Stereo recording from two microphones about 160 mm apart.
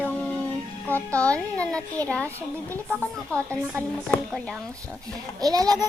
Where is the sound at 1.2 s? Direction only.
10° left (ahead or behind).